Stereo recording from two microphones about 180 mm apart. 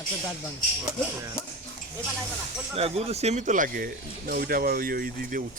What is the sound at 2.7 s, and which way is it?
Speech, 35° right (ahead or behind).